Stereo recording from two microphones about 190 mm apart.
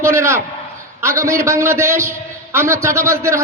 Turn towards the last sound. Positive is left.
turn(degrees=-15)  # may be behind; listen again after turning